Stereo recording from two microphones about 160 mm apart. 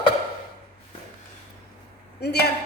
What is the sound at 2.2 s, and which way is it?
Speech, 90° left.